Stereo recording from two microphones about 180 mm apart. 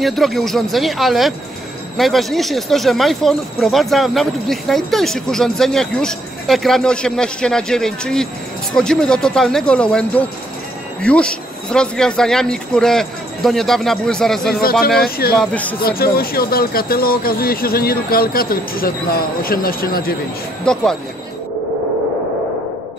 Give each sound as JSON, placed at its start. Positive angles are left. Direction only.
{"t": 0.0, "sound": "speech", "side_deg": 0}
{"t": 14.6, "sound": "speech", "side_deg": 55}
{"t": 15.3, "sound": "speech", "side_deg": 10}
{"t": 16.0, "sound": "speech", "side_deg": 55}
{"t": 20.6, "sound": "speech", "side_deg": 5}